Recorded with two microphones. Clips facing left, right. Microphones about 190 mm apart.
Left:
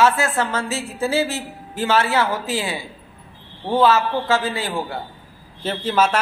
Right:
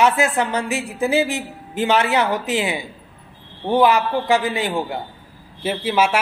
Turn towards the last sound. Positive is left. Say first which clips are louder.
# right 1 dB
turn(degrees=-10)  # may be behind; listen again after turning